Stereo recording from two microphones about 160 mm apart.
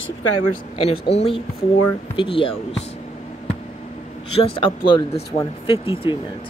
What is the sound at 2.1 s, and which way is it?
Speech, 30° left (ahead or behind).